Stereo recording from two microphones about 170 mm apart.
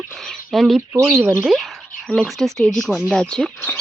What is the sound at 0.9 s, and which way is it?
Speech, 15° right (ahead or behind).